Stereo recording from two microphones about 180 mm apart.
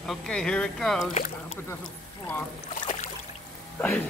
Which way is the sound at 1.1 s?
40° left (ahead or behind).